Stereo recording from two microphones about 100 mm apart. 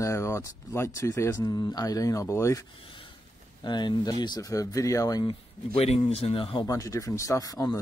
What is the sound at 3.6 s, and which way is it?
Speech, 50° left (ahead or behind).